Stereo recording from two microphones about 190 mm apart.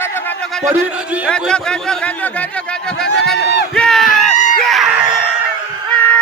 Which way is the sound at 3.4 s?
60° left (ahead or behind).